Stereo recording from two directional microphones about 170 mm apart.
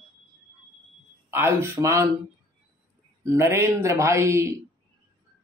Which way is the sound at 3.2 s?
15° right (ahead or behind).